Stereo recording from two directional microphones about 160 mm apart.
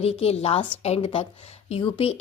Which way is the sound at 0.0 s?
40° left (ahead or behind).